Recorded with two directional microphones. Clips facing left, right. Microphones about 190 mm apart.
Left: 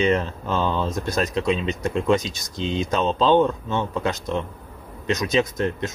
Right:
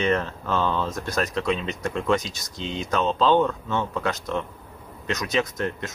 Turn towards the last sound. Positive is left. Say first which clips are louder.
# left 4 dB
turn(degrees=25)  # may be behind; listen again after turning